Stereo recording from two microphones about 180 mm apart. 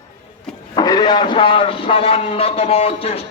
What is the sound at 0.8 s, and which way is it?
A man's voice, 20° left (ahead or behind).